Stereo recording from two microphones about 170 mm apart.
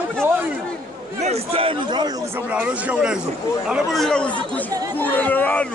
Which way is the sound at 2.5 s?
5° right (ahead or behind).